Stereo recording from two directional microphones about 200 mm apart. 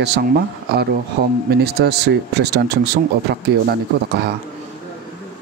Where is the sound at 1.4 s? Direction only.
55° right (ahead or behind).